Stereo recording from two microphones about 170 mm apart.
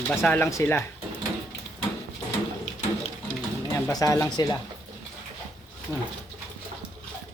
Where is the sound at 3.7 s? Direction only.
20° left (ahead or behind).